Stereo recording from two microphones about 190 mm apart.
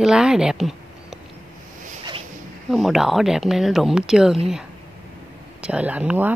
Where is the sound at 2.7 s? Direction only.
Centre (ahead or behind).